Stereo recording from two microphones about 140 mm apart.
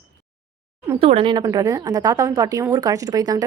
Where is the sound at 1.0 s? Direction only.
40° right (ahead or behind).